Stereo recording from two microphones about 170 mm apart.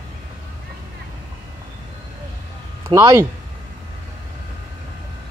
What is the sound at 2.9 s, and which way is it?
Speech, 15° right (ahead or behind).